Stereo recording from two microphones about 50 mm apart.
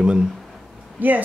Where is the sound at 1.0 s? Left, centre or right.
Right.